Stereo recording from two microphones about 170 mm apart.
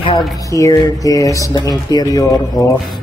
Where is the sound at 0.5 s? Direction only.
20° left (ahead or behind).